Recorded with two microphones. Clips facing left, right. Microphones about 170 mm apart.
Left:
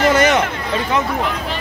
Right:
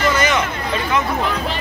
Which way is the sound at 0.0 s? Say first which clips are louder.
Left 4 dB; 65° left (ahead or behind).